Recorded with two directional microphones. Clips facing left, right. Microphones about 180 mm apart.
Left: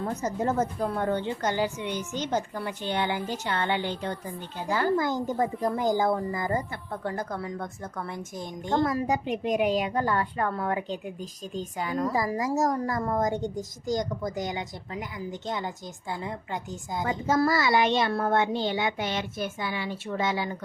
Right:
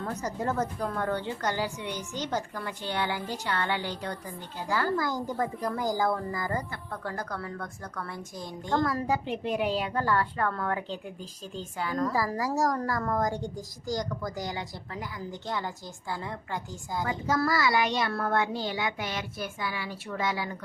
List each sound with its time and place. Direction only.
0.0 s speech: 20° left (ahead or behind)